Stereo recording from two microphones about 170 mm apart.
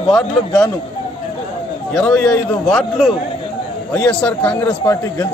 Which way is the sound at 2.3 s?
5° left (ahead or behind).